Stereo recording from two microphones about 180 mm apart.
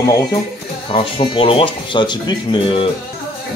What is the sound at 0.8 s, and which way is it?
Speech, 30° left (ahead or behind).